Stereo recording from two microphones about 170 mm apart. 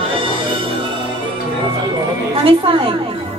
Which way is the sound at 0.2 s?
30° right (ahead or behind).